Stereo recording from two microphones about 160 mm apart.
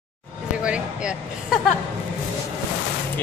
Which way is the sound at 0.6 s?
5° right (ahead or behind).